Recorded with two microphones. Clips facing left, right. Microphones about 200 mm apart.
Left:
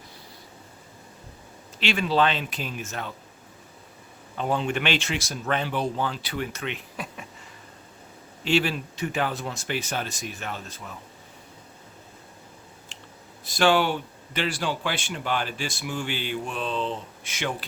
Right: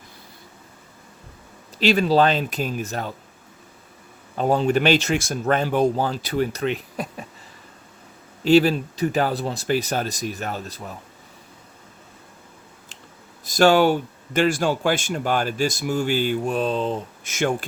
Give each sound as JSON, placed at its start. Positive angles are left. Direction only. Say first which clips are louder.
{"t": 1.8, "sound": "speech", "louder": "right 6 dB", "side_deg": -40}
{"t": 4.4, "sound": "speech", "louder": "right 7 dB", "side_deg": -40}
{"t": 8.4, "sound": "speech", "louder": "right 8 dB", "side_deg": -40}
{"t": 12.9, "sound": "a sound", "louder": "even", "side_deg": -40}
{"t": 13.4, "sound": "speech", "louder": "right 6 dB", "side_deg": -40}